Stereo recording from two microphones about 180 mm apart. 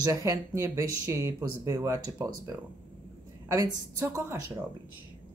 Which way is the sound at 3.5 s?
15° right (ahead or behind).